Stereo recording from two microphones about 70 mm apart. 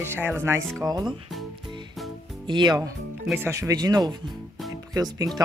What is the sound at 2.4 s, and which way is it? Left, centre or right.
Speech, right.